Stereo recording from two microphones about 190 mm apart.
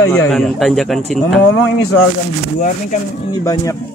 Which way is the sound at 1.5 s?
80° left.